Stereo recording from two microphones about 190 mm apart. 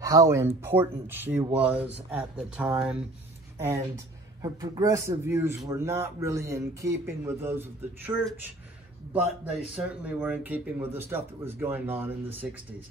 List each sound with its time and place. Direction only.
0.0 s speech: 15° right (ahead or behind)
9.8 s speech: 5° right (ahead or behind)